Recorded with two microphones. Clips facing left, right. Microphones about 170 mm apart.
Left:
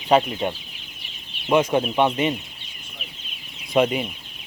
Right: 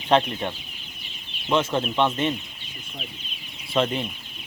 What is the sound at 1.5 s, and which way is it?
Speech, 15° left (ahead or behind).